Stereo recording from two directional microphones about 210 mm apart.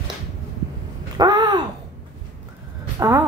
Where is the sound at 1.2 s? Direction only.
15° right (ahead or behind).